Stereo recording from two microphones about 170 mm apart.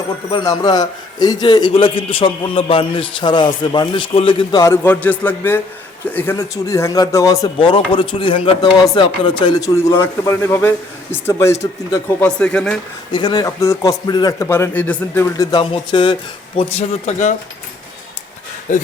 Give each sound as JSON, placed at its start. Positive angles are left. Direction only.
{"t": 0.3, "sound": "a man's voice", "side_deg": 25}
{"t": 4.6, "sound": "a man's voice", "side_deg": 15}
{"t": 13.1, "sound": "a man's voice", "side_deg": 25}
{"t": 15.7, "sound": "speech", "side_deg": 30}
{"t": 18.7, "sound": "speech", "side_deg": 50}